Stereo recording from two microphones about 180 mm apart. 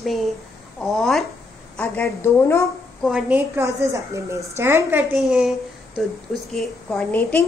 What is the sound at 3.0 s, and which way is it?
Speech, 5° right (ahead or behind).